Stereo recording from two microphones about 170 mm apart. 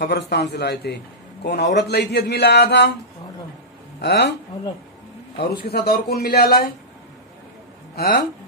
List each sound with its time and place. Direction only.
0.0 s a man's voice: 75° left (ahead or behind)
4.0 s speech: 85° left
5.6 s a man's voice: 65° left (ahead or behind)
7.9 s speech: 70° left (ahead or behind)